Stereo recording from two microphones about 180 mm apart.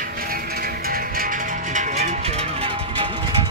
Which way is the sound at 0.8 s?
55° right (ahead or behind).